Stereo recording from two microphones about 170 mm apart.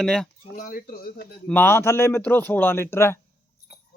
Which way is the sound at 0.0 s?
5° left (ahead or behind).